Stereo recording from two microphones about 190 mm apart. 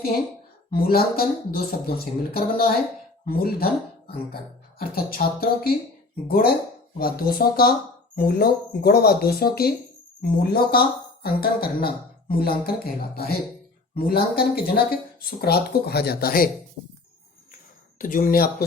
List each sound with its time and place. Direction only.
0.7 s speech: 50° left (ahead or behind)
17.9 s speech: 45° left (ahead or behind)